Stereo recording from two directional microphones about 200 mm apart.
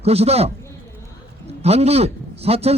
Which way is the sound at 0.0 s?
30° right (ahead or behind).